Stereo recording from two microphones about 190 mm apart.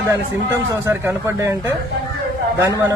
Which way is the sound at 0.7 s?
15° right (ahead or behind).